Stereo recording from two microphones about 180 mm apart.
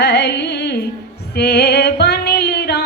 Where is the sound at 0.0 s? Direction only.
70° left (ahead or behind).